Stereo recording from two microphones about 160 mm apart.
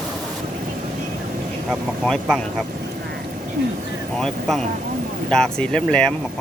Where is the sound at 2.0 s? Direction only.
Centre (ahead or behind).